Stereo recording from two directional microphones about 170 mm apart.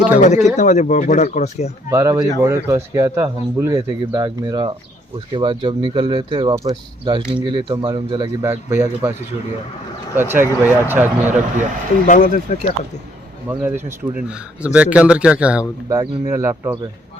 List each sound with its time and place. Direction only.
0.2 s speech: 45° left (ahead or behind)
1.9 s speech: 15° right (ahead or behind)
8.4 s speech: 15° right (ahead or behind)
10.2 s speech: 15° right (ahead or behind)
12.0 s speech: 50° left (ahead or behind)
13.5 s speech: 10° right (ahead or behind)